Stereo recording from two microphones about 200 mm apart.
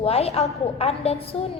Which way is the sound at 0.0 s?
30° left (ahead or behind).